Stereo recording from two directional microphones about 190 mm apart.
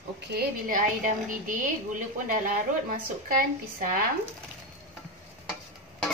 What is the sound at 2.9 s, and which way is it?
A woman's voice, 45° right (ahead or behind).